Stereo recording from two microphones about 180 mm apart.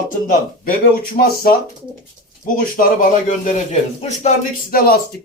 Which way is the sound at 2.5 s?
50° left (ahead or behind).